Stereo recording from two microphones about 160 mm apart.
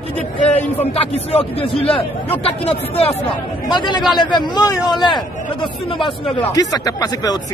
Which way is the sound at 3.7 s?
30° left (ahead or behind).